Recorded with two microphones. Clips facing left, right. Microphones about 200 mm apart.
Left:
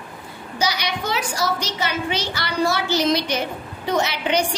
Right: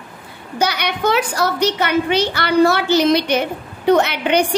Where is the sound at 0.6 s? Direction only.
60° right (ahead or behind).